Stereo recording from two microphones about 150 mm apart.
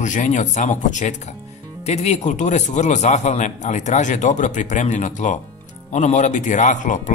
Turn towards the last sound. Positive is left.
turn(degrees=55)  # may be behind; listen again after turning